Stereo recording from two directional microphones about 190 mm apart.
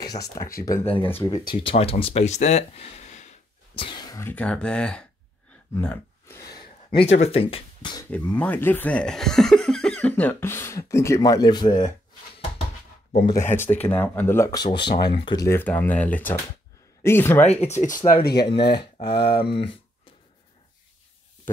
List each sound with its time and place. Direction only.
0.3 s speech: 15° left (ahead or behind); by 3.3 s 35° left (ahead or behind)
3.7 s a sound: 25° left (ahead or behind)
4.2 s speech: 10° left (ahead or behind)
5.8 s a sound: 15° left (ahead or behind)
6.9 s speech: 30° left (ahead or behind)
8.1 s speech: 5° left (ahead or behind)
13.3 s speech: 15° left (ahead or behind)
15.4 s speech: 10° left (ahead or behind)
17.7 s speech: 45° left (ahead or behind)
19.1 s speech: 30° left (ahead or behind)